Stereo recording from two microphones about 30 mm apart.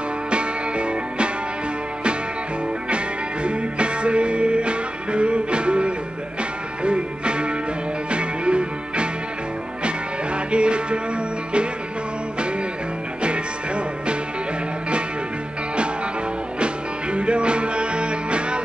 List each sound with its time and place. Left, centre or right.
0.3 s music: right
3.4 s music: right
13.2 s music: right
16.5 s music: right